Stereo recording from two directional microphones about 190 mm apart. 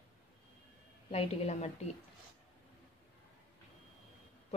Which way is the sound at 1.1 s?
35° left (ahead or behind).